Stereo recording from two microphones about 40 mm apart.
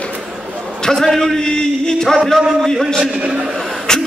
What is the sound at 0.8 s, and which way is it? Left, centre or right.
A man's voice, centre.